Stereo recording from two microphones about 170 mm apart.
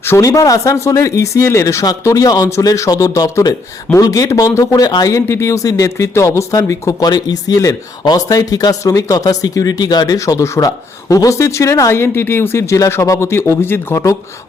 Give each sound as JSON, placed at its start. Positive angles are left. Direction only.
{"t": 0.0, "sound": "speech", "side_deg": 15}